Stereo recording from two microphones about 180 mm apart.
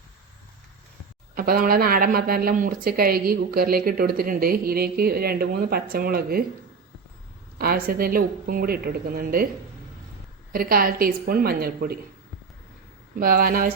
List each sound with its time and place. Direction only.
1.4 s speech: 55° right (ahead or behind)
7.9 s speech: 55° right (ahead or behind)
10.5 s speech: 55° right (ahead or behind)
13.1 s speech: 55° right (ahead or behind)